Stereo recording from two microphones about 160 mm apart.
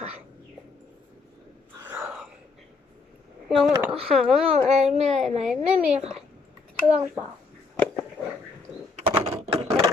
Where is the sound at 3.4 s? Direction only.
5° right (ahead or behind).